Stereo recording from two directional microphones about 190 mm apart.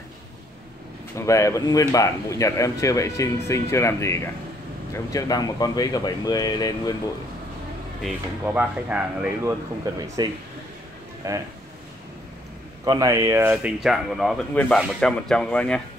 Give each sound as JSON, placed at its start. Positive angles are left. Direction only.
{"t": 1.1, "sound": "speech", "side_deg": 15}
{"t": 8.0, "sound": "speech", "side_deg": -10}
{"t": 9.9, "sound": "speech", "side_deg": -20}
{"t": 12.8, "sound": "speech", "side_deg": -20}